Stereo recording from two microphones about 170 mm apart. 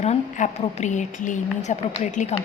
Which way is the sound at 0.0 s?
40° left (ahead or behind).